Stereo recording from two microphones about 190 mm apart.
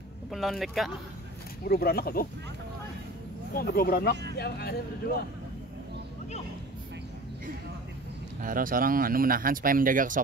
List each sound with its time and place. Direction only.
0.3 s speech: centre (ahead or behind)
1.7 s speech: 55° left (ahead or behind)
3.5 s speech: 55° left (ahead or behind)
8.4 s speech: 45° right (ahead or behind)